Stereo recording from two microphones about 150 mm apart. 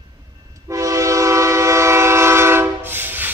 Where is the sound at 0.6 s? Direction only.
20° right (ahead or behind).